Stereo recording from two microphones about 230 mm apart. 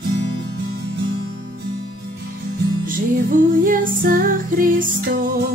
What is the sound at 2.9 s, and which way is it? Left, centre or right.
Music, right.